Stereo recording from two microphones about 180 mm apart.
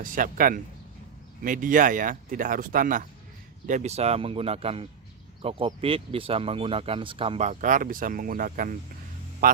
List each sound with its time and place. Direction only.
0.0 s speech: 50° right (ahead or behind)
9.4 s music: 50° right (ahead or behind)